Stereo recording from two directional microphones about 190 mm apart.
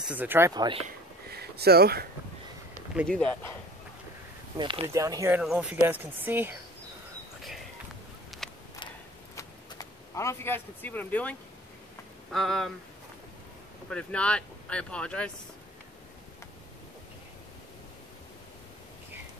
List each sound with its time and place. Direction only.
0.0 s speech: 10° right (ahead or behind)
0.6 s speech: 25° right (ahead or behind)
1.3 s speech: 55° right (ahead or behind)
3.1 s speech: 5° left (ahead or behind)
4.6 s speech: 25° right (ahead or behind)
5.4 s speech: 5° right (ahead or behind)
8.3 s a sound: centre (ahead or behind)
9.3 s a sound: 20° left (ahead or behind)
12.3 s speech: centre (ahead or behind)
13.8 s speech: 5° left (ahead or behind)